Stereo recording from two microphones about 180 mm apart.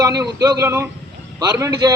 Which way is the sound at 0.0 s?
20° right (ahead or behind).